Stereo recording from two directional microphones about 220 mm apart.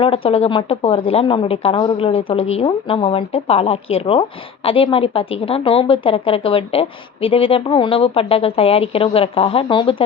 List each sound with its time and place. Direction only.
0.0 s speech: 25° left (ahead or behind)